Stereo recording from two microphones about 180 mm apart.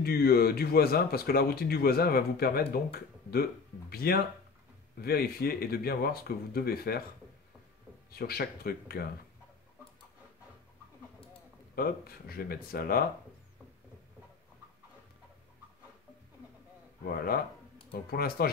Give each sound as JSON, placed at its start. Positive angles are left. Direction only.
{"t": 0.0, "sound": "speech", "side_deg": 60}
{"t": 8.2, "sound": "speech", "side_deg": 60}
{"t": 11.7, "sound": "speech", "side_deg": 55}
{"t": 17.0, "sound": "speech", "side_deg": 55}